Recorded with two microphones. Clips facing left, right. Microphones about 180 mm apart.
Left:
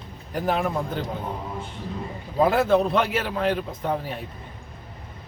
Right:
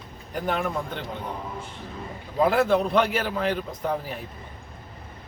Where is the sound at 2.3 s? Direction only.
Centre (ahead or behind).